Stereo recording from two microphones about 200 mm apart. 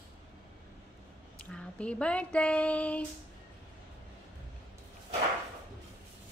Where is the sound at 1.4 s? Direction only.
5° left (ahead or behind).